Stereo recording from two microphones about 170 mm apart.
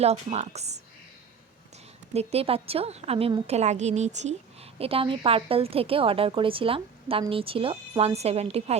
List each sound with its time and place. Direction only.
0.0 s a woman's voice: 40° right (ahead or behind)
2.1 s a woman's voice: 35° right (ahead or behind)